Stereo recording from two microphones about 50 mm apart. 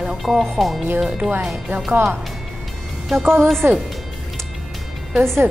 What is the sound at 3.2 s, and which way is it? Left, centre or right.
Speech, right.